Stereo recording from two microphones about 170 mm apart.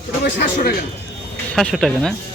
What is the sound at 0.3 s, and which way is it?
Speech, 90° left.